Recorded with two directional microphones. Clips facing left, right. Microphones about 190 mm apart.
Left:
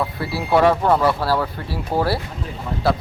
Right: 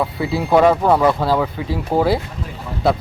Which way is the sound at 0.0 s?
15° right (ahead or behind).